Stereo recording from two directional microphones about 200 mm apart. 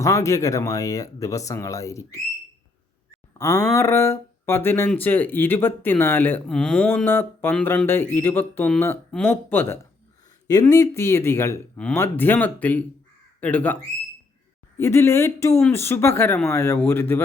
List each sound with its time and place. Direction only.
0.0 s speech: 15° left (ahead or behind)
3.3 s speech: 15° left (ahead or behind)
14.8 s speech: 10° left (ahead or behind)